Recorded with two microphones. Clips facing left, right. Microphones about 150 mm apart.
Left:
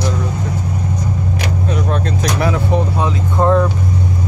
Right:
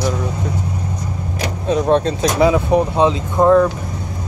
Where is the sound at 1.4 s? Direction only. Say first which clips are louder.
Right 6 dB; 30° right (ahead or behind).